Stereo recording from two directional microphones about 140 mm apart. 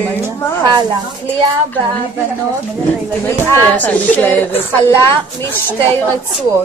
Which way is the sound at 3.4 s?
15° left (ahead or behind).